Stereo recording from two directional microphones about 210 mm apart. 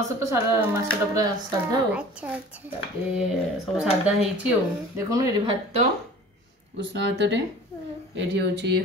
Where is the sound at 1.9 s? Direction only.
5° right (ahead or behind).